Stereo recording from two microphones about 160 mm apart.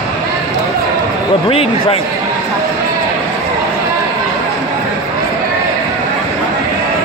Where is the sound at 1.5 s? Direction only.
35° left (ahead or behind).